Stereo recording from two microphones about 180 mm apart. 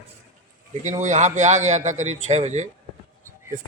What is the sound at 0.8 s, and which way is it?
A man's voice, 40° right (ahead or behind).